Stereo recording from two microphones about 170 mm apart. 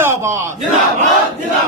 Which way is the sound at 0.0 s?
15° right (ahead or behind).